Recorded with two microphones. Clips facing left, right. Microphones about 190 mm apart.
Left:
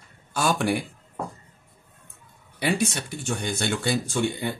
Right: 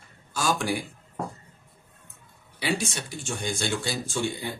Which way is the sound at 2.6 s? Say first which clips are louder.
Left 4 dB; 60° left (ahead or behind).